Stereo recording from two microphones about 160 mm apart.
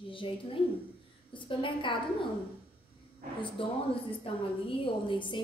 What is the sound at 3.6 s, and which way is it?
A woman's voice, 35° left (ahead or behind).